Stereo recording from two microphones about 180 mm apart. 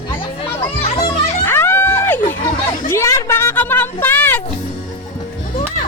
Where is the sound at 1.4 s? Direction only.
10° left (ahead or behind).